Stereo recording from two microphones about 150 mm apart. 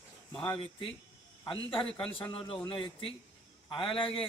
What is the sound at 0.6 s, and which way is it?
A man's voice, 35° left (ahead or behind).